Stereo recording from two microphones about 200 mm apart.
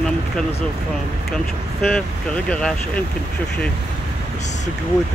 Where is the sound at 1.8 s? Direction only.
5° left (ahead or behind).